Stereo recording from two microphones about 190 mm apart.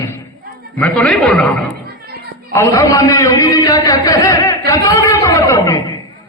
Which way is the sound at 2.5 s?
15° left (ahead or behind).